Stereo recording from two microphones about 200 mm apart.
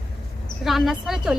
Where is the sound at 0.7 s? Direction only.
Centre (ahead or behind).